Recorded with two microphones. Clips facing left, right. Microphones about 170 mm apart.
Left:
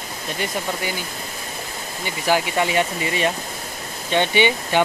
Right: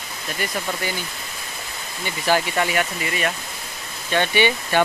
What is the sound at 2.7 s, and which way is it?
Speech, 25° left (ahead or behind).